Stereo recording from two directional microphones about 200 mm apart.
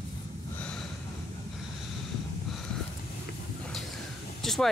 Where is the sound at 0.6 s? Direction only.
5° left (ahead or behind).